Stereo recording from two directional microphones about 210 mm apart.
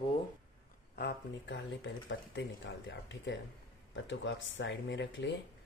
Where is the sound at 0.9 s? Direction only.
50° left (ahead or behind).